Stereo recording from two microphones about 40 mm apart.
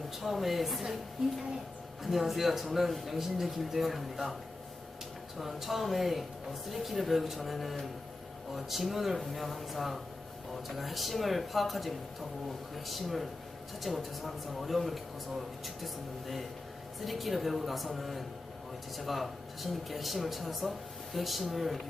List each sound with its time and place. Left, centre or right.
0.2 s speech: centre
2.0 s speech: centre
5.4 s speech: centre